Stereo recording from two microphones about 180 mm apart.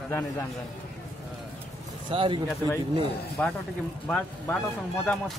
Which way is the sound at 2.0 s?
30° right (ahead or behind).